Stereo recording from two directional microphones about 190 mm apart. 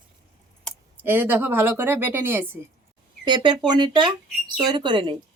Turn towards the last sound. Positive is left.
turn(degrees=-25)  # may be behind; listen again after turning